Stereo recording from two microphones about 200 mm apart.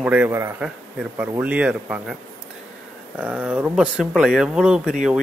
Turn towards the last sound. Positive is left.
turn(degrees=-5)  # may be behind; listen again after turning